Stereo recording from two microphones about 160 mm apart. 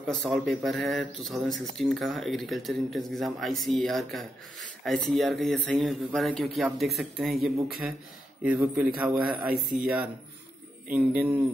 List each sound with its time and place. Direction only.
0.1 s speech: 5° left (ahead or behind)
9.5 s speech: 65° right (ahead or behind)
10.9 s speech: 5° right (ahead or behind)